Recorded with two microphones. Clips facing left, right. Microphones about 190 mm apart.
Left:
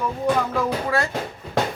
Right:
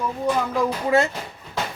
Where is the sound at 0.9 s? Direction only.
20° right (ahead or behind).